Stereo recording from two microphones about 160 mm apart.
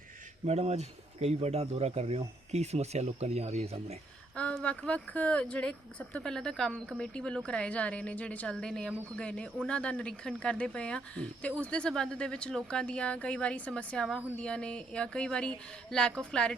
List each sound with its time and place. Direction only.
0.4 s speech: 45° right (ahead or behind)
4.4 s speech: 10° left (ahead or behind)